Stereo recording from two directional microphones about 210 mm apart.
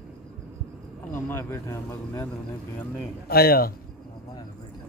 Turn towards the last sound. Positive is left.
turn(degrees=45)  # may be behind; listen again after turning